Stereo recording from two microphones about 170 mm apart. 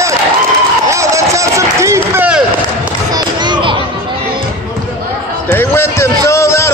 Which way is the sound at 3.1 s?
25° right (ahead or behind).